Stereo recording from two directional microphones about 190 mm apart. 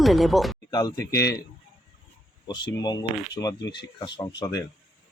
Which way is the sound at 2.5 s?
20° left (ahead or behind).